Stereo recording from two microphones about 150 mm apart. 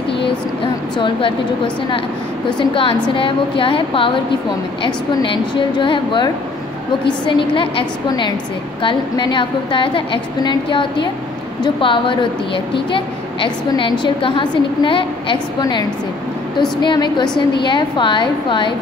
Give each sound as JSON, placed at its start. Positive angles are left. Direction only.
{"t": 0.9, "sound": "a woman's voice", "side_deg": 30}
{"t": 2.7, "sound": "a woman's voice", "side_deg": 35}
{"t": 16.8, "sound": "a woman's voice", "side_deg": 30}